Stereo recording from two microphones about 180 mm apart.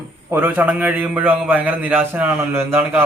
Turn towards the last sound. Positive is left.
turn(degrees=-10)  # may be behind; listen again after turning